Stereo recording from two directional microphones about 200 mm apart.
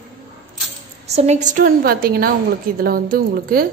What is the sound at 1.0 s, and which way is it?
A woman's voice, 35° right (ahead or behind).